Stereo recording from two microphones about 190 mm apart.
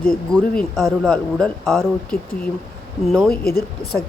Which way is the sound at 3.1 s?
Centre (ahead or behind).